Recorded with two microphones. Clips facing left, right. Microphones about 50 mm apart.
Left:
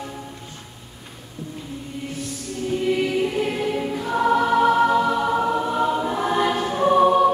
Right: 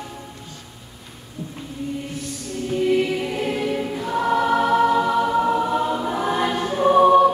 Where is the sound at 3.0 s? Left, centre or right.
Centre.